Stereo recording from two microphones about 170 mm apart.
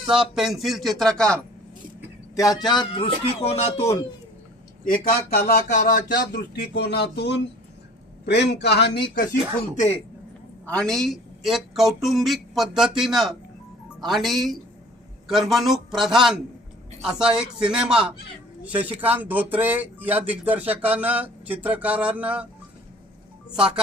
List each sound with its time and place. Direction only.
0.1 s speech: 5° right (ahead or behind)
2.6 s music: 25° left (ahead or behind)
4.9 s speech: 60° left (ahead or behind)
5.7 s a sound: 50° left (ahead or behind)
6.3 s speech: 70° left (ahead or behind)
10.8 s speech: centre (ahead or behind)
23.5 s speech: 5° right (ahead or behind)